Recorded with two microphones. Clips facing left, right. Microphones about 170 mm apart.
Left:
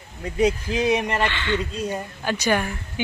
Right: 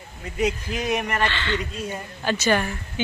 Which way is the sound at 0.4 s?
30° left (ahead or behind).